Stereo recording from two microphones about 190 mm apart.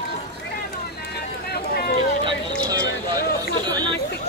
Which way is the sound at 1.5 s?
55° left (ahead or behind).